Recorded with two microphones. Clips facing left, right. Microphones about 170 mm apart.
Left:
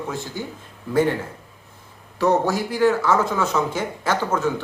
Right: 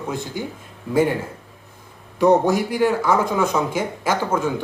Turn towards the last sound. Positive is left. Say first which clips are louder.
# right 1 dB
turn(degrees=-10)  # may be behind; listen again after turning